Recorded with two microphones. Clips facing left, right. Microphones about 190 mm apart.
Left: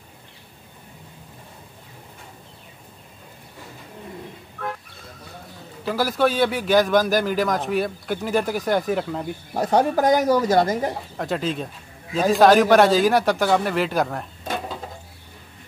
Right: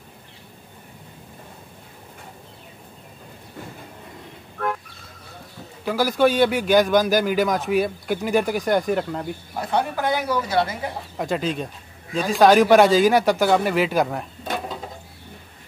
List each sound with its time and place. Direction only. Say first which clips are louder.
5.9 s a man's voice: right 2 dB; centre (ahead or behind)
9.5 s speech: left 5 dB; 40° left (ahead or behind)
11.1 s a man's voice: right 3 dB; centre (ahead or behind)